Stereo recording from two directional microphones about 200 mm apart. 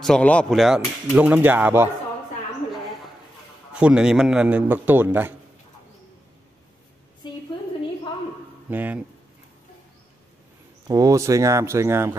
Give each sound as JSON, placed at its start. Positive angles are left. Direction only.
{"t": 0.0, "sound": "speech", "side_deg": 5}
{"t": 3.7, "sound": "a man's voice", "side_deg": -5}
{"t": 7.2, "sound": "a sound", "side_deg": 25}
{"t": 8.6, "sound": "speech", "side_deg": -10}
{"t": 10.9, "sound": "a man's voice", "side_deg": -15}